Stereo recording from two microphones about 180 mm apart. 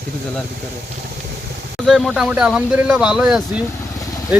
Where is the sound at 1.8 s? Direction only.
Centre (ahead or behind).